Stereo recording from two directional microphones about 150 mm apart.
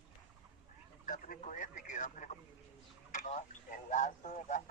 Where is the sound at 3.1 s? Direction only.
55° left (ahead or behind).